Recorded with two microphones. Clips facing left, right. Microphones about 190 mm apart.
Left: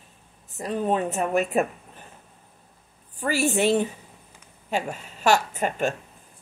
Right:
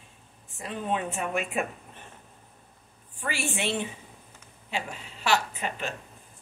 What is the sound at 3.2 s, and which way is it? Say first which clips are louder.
Speech: left 9 dB; 40° left (ahead or behind).